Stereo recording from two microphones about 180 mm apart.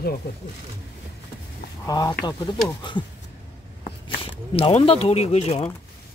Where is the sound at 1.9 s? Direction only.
20° left (ahead or behind).